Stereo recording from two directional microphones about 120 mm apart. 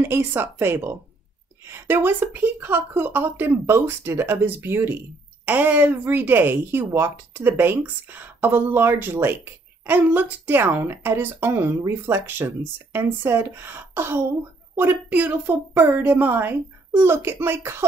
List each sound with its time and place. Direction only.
0.0 s speech: 20° right (ahead or behind)